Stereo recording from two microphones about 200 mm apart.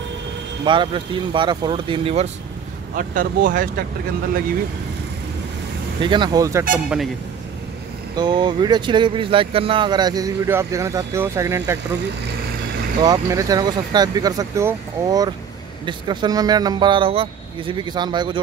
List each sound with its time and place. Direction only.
0.7 s speech: 25° right (ahead or behind)
3.0 s speech: 45° right (ahead or behind)
5.9 s speech: 25° right (ahead or behind)
6.7 s speech: 5° right (ahead or behind)
8.2 s speech: 20° right (ahead or behind)
13.0 s speech: 15° right (ahead or behind)